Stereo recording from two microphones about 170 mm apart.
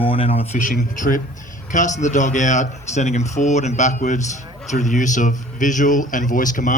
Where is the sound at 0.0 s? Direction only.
35° left (ahead or behind).